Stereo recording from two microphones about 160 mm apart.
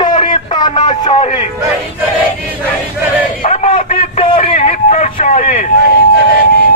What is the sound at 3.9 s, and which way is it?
Vehicle, 35° left (ahead or behind).